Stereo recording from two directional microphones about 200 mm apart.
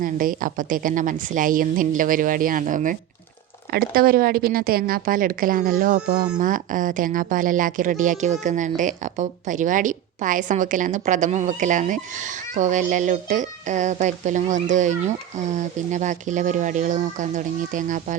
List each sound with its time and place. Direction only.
0.0 s a woman's voice: 45° right (ahead or behind)